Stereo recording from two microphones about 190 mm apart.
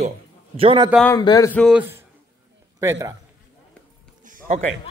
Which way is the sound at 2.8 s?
15° right (ahead or behind).